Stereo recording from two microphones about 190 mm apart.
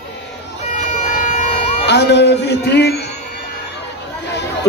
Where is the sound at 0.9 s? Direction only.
40° left (ahead or behind).